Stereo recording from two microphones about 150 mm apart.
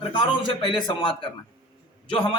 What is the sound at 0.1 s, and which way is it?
Speech, 30° left (ahead or behind).